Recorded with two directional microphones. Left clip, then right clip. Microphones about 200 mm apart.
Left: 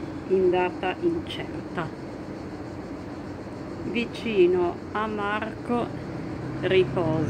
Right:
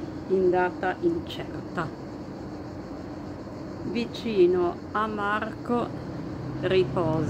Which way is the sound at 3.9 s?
45° right (ahead or behind).